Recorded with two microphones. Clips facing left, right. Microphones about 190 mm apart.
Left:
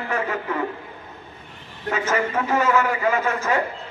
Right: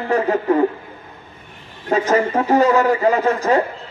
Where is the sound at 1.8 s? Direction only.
35° right (ahead or behind).